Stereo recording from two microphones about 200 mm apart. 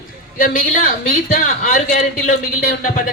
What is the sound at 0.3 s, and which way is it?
A woman's voice, 45° left (ahead or behind).